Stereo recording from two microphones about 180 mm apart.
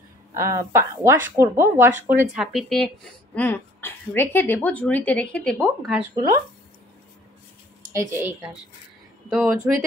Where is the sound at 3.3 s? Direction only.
10° left (ahead or behind).